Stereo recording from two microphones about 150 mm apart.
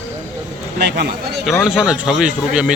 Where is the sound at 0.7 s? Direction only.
90° right.